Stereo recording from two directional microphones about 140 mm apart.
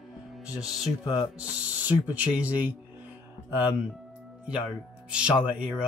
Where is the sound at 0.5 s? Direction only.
5° right (ahead or behind).